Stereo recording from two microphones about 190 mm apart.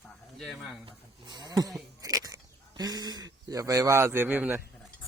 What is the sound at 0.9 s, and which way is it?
Speech, 25° right (ahead or behind).